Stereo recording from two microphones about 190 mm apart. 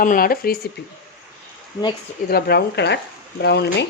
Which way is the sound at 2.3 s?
60° left (ahead or behind).